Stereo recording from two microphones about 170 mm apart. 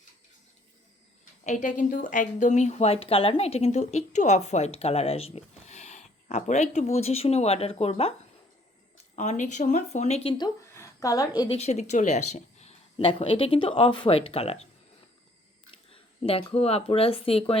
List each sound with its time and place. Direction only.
1.2 s speech: 45° left (ahead or behind)
9.1 s speech: 45° left (ahead or behind); by 11.4 s 20° left (ahead or behind)
11.4 s speech: 40° left (ahead or behind)
15.9 s speech: 35° left (ahead or behind)